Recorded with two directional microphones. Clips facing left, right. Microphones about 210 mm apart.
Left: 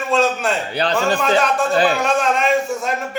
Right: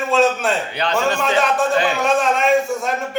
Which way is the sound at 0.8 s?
35° left (ahead or behind).